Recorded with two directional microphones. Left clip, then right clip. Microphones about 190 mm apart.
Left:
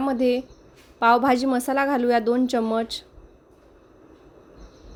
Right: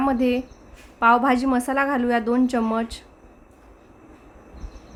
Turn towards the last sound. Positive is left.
turn(degrees=15)  # may be behind; listen again after turning